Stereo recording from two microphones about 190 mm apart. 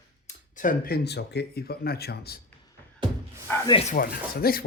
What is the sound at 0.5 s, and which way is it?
Speech, 45° left (ahead or behind).